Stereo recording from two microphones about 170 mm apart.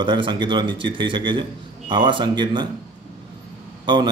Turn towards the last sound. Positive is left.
turn(degrees=-25)  # may be behind; listen again after turning